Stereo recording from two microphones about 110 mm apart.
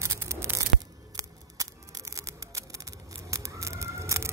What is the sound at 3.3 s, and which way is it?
Chicken, 30° right (ahead or behind).